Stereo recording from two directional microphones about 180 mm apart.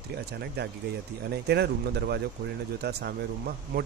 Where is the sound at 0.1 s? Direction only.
65° right (ahead or behind).